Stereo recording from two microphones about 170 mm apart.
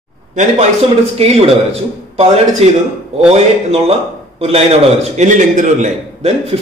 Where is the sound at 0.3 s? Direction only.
45° right (ahead or behind).